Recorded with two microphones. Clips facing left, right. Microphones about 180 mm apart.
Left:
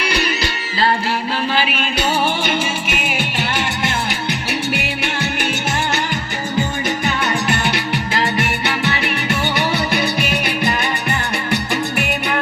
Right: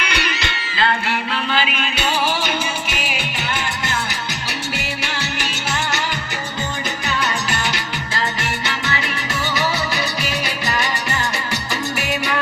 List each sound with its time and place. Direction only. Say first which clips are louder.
2.0 s music: left 2 dB; 50° left (ahead or behind)
4.7 s music: left 4 dB; 60° left (ahead or behind)
7.0 s music: left 4 dB; 60° left (ahead or behind)